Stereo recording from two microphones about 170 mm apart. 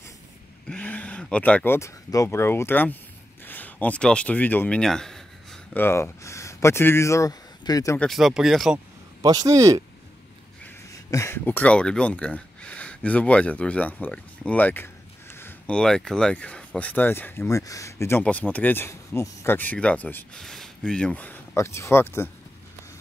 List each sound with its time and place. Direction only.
0.7 s speech: 10° left (ahead or behind)
8.0 s speech: centre (ahead or behind)
8.7 s speech: 20° right (ahead or behind)
10.6 s speech: 15° left (ahead or behind)